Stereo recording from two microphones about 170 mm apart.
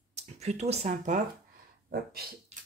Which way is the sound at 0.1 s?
40° right (ahead or behind).